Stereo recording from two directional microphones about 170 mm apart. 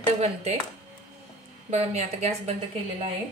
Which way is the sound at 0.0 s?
40° right (ahead or behind).